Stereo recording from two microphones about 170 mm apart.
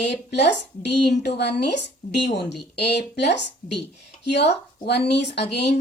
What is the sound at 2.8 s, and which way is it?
Speech, 80° left.